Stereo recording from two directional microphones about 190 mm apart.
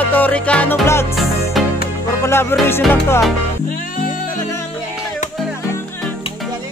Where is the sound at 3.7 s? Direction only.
45° left (ahead or behind).